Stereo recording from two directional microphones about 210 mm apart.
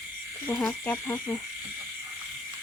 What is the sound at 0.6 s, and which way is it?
Speech, 5° left (ahead or behind).